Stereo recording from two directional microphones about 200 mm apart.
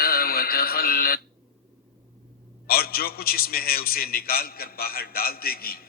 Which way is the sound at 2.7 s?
50° left (ahead or behind).